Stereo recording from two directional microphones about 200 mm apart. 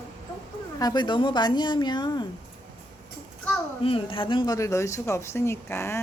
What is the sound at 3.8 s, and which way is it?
Speech, 25° left (ahead or behind).